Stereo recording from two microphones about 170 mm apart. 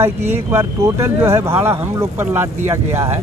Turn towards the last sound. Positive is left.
turn(degrees=-15)  # may be behind; listen again after turning